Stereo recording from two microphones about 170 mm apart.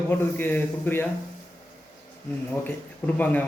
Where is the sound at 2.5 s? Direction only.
10° left (ahead or behind).